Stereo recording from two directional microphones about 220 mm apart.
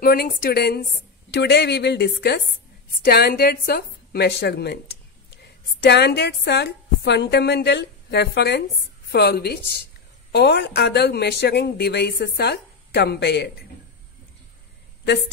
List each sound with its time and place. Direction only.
0.0 s a woman's voice: 40° left (ahead or behind)